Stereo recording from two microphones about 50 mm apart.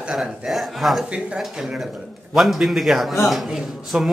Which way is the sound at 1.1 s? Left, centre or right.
Right.